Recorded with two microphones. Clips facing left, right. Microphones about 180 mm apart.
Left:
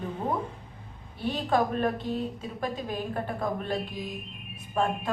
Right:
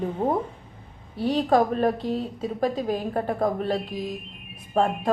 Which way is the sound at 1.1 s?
35° right (ahead or behind).